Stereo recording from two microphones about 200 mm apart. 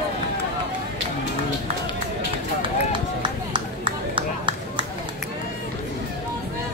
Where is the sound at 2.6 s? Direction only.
25° right (ahead or behind).